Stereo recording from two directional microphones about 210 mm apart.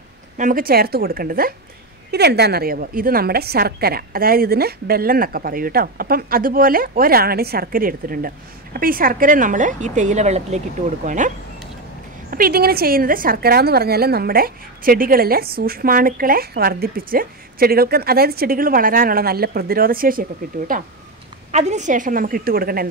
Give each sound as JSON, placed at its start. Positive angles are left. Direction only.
{"t": 0.4, "sound": "a woman's voice", "side_deg": -40}